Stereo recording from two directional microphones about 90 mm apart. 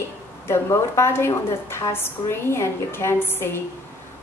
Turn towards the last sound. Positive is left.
turn(degrees=25)  # may be behind; listen again after turning